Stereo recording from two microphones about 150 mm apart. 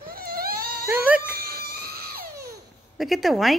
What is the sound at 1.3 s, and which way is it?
Crying, 90° right.